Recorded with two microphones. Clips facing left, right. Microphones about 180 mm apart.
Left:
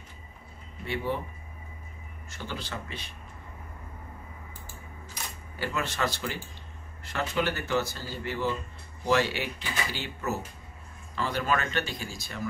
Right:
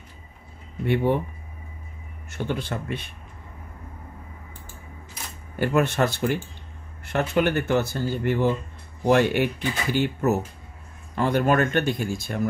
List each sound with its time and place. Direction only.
0.8 s speech: 60° right (ahead or behind)
2.2 s speech: 55° right (ahead or behind)
5.6 s speech: 55° right (ahead or behind)